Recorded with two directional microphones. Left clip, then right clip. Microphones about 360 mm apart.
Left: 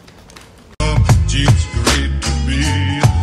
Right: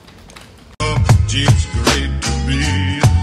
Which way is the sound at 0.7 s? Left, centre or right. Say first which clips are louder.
Even; centre.